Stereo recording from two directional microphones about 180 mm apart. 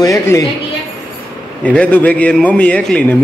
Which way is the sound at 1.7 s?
10° left (ahead or behind).